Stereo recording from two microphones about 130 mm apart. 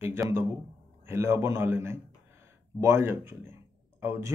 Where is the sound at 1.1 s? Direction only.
20° right (ahead or behind).